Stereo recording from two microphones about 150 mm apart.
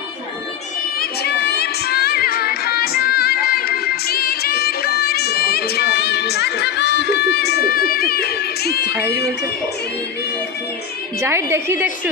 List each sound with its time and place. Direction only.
0.9 s music: 90° left
8.9 s speech: 20° right (ahead or behind)
11.1 s a woman's voice: 20° right (ahead or behind)